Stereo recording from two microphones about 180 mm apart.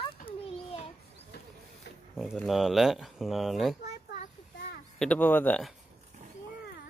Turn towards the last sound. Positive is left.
turn(degrees=5)  # may be behind; listen again after turning